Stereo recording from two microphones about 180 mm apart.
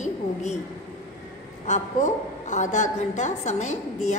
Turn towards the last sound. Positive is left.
turn(degrees=40)  # may be behind; listen again after turning